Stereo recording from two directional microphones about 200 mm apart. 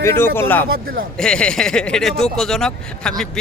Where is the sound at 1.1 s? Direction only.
5° left (ahead or behind).